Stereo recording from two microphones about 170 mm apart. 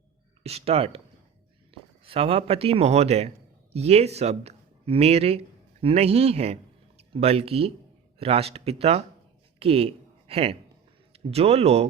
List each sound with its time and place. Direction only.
0.4 s a man's voice: 35° right (ahead or behind)